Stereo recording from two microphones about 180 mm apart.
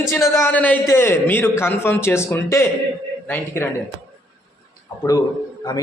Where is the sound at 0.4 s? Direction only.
10° left (ahead or behind).